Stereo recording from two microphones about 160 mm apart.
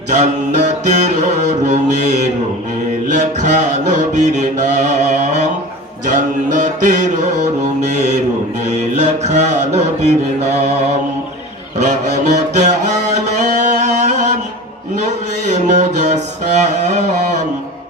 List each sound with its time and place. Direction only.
0.1 s mantra: 45° right (ahead or behind)
6.1 s music: 50° right (ahead or behind)
7.8 s mantra: 45° right (ahead or behind)
11.8 s music: 45° right (ahead or behind)
14.9 s a sound: 50° right (ahead or behind)